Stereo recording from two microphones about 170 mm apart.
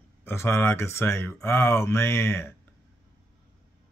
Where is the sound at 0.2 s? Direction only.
15° left (ahead or behind).